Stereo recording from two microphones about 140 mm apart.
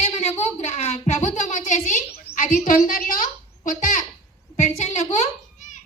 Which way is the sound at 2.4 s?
75° left (ahead or behind).